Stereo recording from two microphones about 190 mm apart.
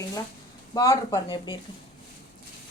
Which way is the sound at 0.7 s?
20° left (ahead or behind).